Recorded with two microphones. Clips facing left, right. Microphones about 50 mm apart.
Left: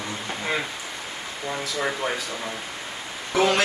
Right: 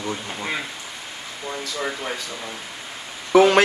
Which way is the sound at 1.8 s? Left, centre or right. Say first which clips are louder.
Left 2 dB; centre.